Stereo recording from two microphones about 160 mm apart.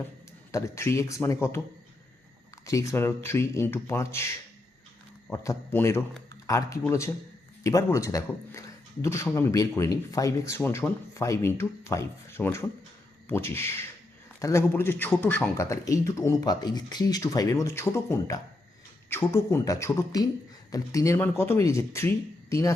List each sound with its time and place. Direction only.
0.5 s speech: 15° left (ahead or behind)
2.6 s speech: 20° left (ahead or behind)
5.3 s a man's voice: 20° left (ahead or behind)